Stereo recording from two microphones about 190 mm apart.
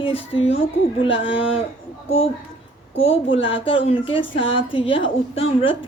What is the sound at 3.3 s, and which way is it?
A woman's voice, 30° left (ahead or behind).